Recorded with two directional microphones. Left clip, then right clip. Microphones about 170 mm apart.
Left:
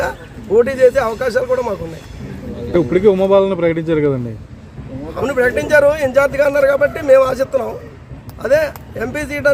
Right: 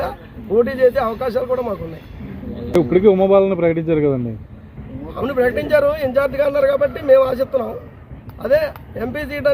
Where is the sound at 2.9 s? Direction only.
35° right (ahead or behind).